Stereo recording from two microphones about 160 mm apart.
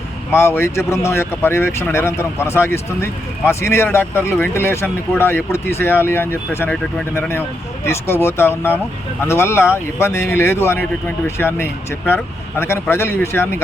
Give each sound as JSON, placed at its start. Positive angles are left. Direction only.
{"t": 0.3, "sound": "speech", "side_deg": 15}